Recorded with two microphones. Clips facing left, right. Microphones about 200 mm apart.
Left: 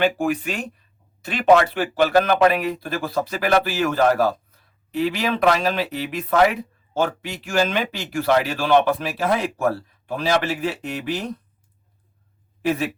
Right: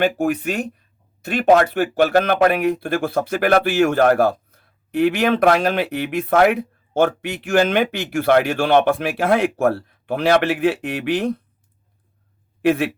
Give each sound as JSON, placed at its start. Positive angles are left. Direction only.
{"t": 0.0, "sound": "speech", "side_deg": -45}
{"t": 12.6, "sound": "a man's voice", "side_deg": -65}